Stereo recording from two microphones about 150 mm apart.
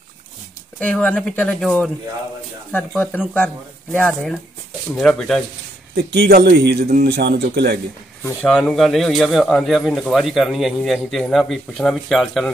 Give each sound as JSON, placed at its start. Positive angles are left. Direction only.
{"t": 0.7, "sound": "speech", "side_deg": 10}
{"t": 3.3, "sound": "speech", "side_deg": 10}
{"t": 6.1, "sound": "a man's voice", "side_deg": -90}
{"t": 8.2, "sound": "speech", "side_deg": 10}